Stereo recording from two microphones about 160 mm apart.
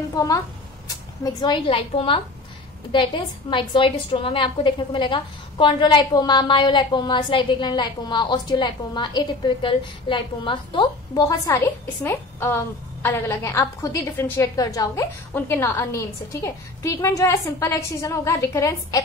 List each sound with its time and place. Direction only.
0.1 s a woman's voice: 20° left (ahead or behind)